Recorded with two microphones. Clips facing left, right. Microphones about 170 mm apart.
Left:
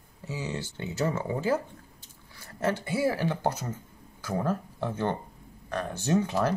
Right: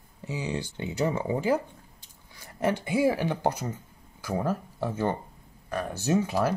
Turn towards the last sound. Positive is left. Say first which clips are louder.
# right 1 dB
turn(degrees=-10)  # may be behind; listen again after turning